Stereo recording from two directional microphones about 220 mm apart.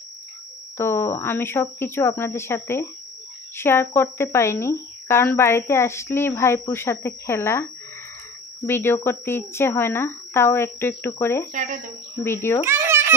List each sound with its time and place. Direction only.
0.7 s speech: 10° left (ahead or behind)
11.5 s speech: 35° right (ahead or behind)
12.2 s speech: 10° left (ahead or behind)
12.6 s babbling: 10° right (ahead or behind)